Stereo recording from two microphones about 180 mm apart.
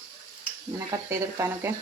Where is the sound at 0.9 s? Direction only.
15° right (ahead or behind).